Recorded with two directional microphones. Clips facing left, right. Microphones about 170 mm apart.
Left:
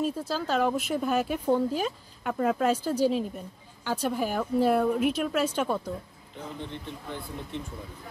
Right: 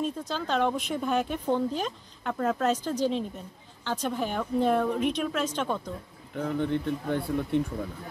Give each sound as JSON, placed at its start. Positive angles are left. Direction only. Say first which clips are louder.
{"t": 0.0, "sound": "speech", "louder": "left 2 dB", "side_deg": 5}
{"t": 6.3, "sound": "speech", "louder": "right 10 dB", "side_deg": -60}